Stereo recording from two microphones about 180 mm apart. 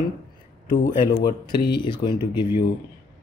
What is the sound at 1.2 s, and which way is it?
Speech, 25° left (ahead or behind).